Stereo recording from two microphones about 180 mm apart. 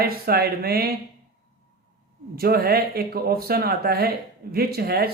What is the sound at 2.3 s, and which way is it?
Speech, 60° right (ahead or behind).